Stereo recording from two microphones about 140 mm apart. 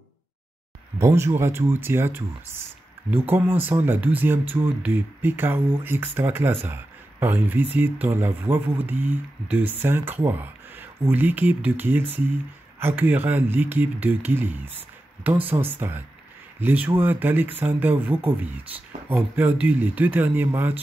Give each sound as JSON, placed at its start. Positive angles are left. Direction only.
{"t": 0.9, "sound": "speech", "side_deg": -20}